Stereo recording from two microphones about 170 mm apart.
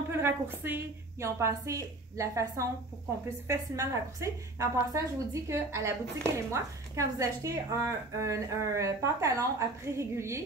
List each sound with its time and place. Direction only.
0.1 s a woman's voice: 15° right (ahead or behind)